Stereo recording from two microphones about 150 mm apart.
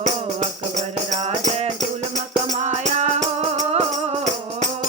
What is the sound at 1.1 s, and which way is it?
Music, 50° right (ahead or behind).